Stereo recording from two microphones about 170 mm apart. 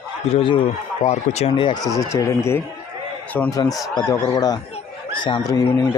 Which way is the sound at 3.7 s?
Centre (ahead or behind).